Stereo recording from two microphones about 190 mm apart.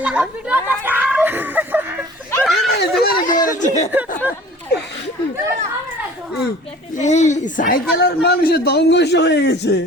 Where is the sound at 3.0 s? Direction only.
50° left (ahead or behind).